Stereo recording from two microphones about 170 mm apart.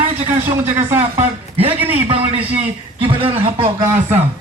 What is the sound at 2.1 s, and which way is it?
A man's voice, 35° right (ahead or behind).